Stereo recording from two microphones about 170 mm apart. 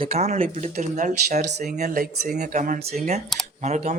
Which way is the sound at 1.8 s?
60° right (ahead or behind).